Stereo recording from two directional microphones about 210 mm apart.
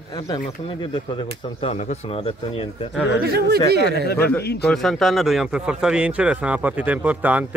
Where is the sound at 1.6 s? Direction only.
30° left (ahead or behind).